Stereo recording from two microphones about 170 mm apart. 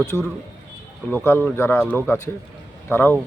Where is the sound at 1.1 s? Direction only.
10° left (ahead or behind).